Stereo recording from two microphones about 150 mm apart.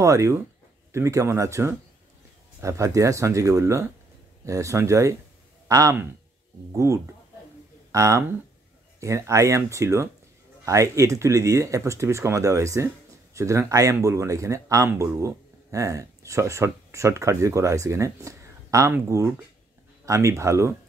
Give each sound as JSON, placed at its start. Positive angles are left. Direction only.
{"t": 0.0, "sound": "speech", "side_deg": -20}